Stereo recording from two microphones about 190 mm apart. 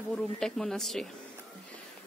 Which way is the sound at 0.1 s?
5° left (ahead or behind).